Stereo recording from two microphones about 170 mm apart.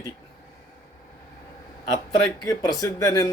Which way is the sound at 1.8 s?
25° left (ahead or behind).